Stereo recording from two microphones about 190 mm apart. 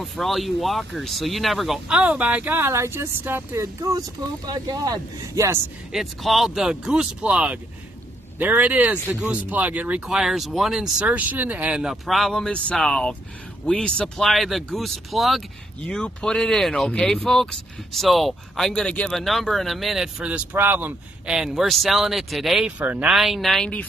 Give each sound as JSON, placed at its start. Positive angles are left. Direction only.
{"t": 0.0, "sound": "speech", "side_deg": 0}
{"t": 5.9, "sound": "speech", "side_deg": 0}